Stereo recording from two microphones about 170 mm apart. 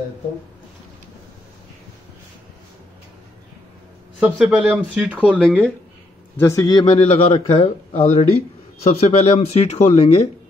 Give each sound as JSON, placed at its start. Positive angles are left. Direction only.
{"t": 4.2, "sound": "speech", "side_deg": -10}
{"t": 5.4, "sound": "speech", "side_deg": 5}